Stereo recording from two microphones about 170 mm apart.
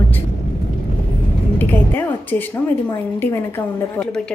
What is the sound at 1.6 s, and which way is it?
A woman's voice, 10° left (ahead or behind).